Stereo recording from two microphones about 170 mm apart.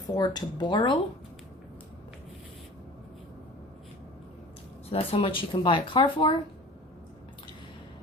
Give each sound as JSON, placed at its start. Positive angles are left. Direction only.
{"t": 0.1, "sound": "speech", "side_deg": 25}
{"t": 4.9, "sound": "speech", "side_deg": 30}